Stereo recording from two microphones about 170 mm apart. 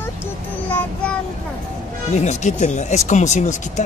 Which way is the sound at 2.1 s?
40° left (ahead or behind).